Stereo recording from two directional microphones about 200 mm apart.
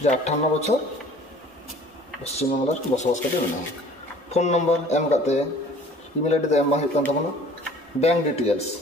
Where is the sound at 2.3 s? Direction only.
35° left (ahead or behind).